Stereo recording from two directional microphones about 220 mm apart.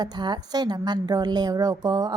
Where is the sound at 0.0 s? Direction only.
20° right (ahead or behind).